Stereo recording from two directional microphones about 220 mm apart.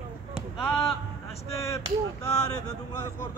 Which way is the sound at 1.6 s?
15° left (ahead or behind).